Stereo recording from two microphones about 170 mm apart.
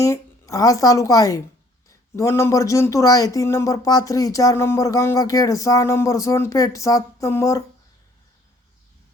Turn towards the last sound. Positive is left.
turn(degrees=20)  # may be behind; listen again after turning